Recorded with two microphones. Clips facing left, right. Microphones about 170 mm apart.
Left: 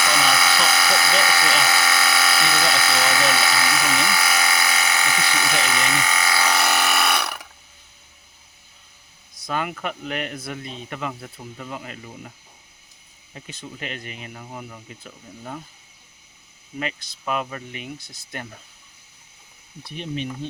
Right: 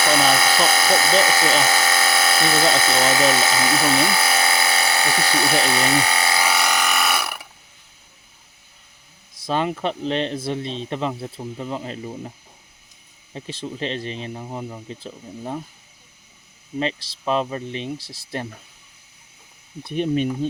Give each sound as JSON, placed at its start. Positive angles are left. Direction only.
{"t": 0.0, "sound": "speech", "side_deg": -30}
{"t": 1.6, "sound": "electric toothbrush", "side_deg": -25}
{"t": 2.8, "sound": "speech", "side_deg": -25}
{"t": 6.4, "sound": "a sound", "side_deg": 0}
{"t": 9.4, "sound": "speech", "side_deg": -30}
{"t": 13.3, "sound": "speech", "side_deg": -30}
{"t": 16.8, "sound": "speech", "side_deg": -30}
{"t": 19.9, "sound": "speech", "side_deg": -50}